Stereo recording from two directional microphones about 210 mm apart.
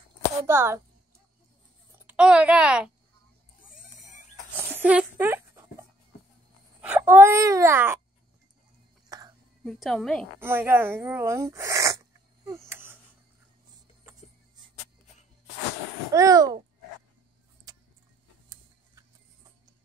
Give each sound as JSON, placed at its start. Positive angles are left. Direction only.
{"t": 0.5, "sound": "speech", "side_deg": -10}
{"t": 2.0, "sound": "a woman's voice", "side_deg": -5}
{"t": 3.6, "sound": "pig", "side_deg": 40}
{"t": 4.6, "sound": "a sound", "side_deg": -10}
{"t": 6.8, "sound": "speech", "side_deg": -10}
{"t": 9.1, "sound": "whispering", "side_deg": -15}
{"t": 9.7, "sound": "a woman's voice", "side_deg": 0}
{"t": 10.4, "sound": "speech", "side_deg": -10}
{"t": 12.4, "sound": "a sound", "side_deg": -10}
{"t": 16.1, "sound": "speech", "side_deg": -15}
{"t": 17.7, "sound": "vehicle", "side_deg": -20}